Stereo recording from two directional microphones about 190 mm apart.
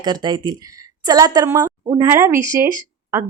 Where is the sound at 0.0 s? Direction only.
25° right (ahead or behind).